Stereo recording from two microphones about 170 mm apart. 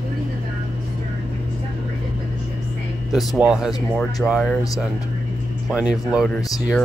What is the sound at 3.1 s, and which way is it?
Speech, 5° right (ahead or behind).